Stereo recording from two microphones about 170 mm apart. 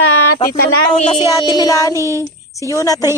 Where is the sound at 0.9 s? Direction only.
40° left (ahead or behind).